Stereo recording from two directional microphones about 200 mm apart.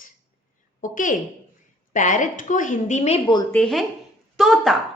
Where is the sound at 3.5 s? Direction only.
Centre (ahead or behind).